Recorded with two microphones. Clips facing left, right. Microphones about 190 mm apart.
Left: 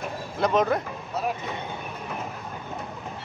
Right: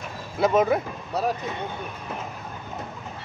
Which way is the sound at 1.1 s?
35° right (ahead or behind).